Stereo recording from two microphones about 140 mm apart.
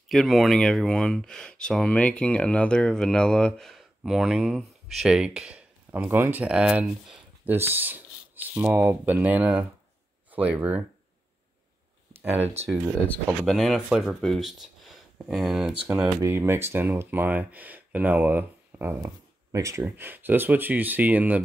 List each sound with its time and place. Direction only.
0.1 s speech: centre (ahead or behind)
12.6 s speech: 15° right (ahead or behind)
13.5 s speech: centre (ahead or behind)
16.2 s speech: 20° right (ahead or behind)